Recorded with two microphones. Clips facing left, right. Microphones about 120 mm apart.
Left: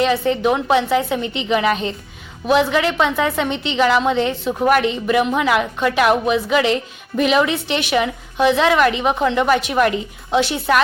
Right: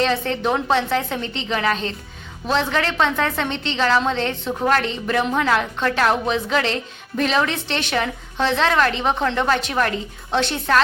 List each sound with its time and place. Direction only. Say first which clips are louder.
0.0 s a woman's voice: left 4 dB; 10° left (ahead or behind)